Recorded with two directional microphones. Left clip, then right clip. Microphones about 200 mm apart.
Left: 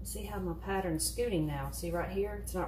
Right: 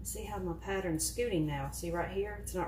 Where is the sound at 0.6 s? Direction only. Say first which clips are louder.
Left 2 dB; 25° right (ahead or behind).